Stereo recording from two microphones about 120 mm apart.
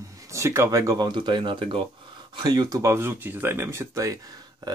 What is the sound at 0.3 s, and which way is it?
Speech, 25° right (ahead or behind).